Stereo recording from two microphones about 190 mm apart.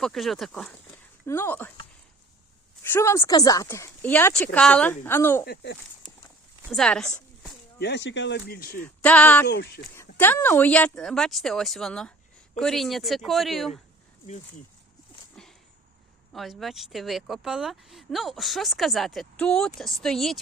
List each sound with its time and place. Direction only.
0.0 s speech: centre (ahead or behind)
2.8 s speech: 10° left (ahead or behind)
6.7 s speech: 5° left (ahead or behind)
7.8 s speech: 65° left (ahead or behind)
9.0 s speech: 5° left (ahead or behind)
9.5 s speech: 60° left (ahead or behind)
10.2 s speech: 10° left (ahead or behind)
15.4 s a sound: 5° left (ahead or behind)
16.3 s speech: centre (ahead or behind)